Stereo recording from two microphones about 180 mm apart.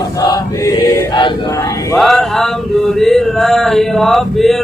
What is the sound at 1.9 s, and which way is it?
Male singing, centre (ahead or behind).